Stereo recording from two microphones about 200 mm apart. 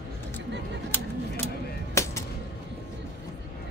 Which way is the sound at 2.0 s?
15° left (ahead or behind).